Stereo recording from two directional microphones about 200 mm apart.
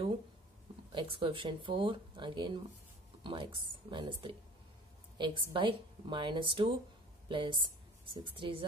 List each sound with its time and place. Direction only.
0.9 s a woman's voice: 25° right (ahead or behind)